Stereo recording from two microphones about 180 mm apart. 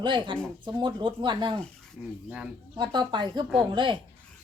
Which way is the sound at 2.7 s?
25° right (ahead or behind).